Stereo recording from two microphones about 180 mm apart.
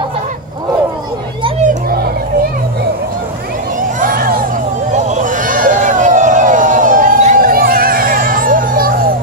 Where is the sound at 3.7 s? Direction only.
50° right (ahead or behind).